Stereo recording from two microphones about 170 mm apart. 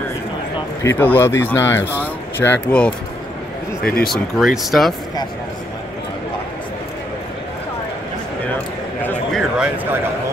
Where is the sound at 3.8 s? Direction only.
60° left (ahead or behind).